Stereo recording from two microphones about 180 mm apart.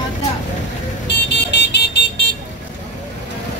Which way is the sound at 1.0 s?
70° left (ahead or behind).